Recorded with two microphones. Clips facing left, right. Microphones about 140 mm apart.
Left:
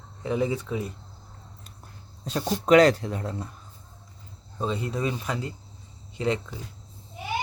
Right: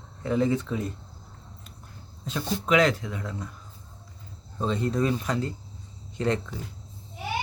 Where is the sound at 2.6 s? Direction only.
35° left (ahead or behind).